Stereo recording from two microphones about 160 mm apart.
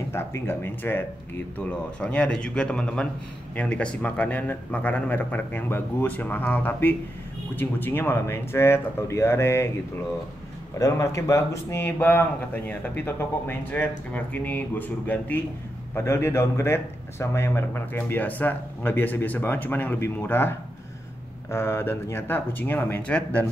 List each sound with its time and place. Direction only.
0.1 s a man's voice: 15° left (ahead or behind)
10.8 s a man's voice: 20° left (ahead or behind)